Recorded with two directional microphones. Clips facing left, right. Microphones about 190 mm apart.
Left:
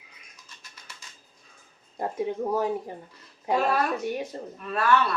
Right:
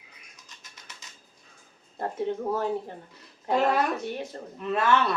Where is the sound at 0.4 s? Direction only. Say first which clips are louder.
Left 1 dB; 20° right (ahead or behind).